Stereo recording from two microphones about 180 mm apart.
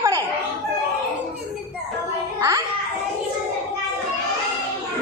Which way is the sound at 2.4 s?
20° right (ahead or behind).